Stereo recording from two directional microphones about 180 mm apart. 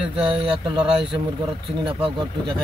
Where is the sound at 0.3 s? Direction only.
25° right (ahead or behind).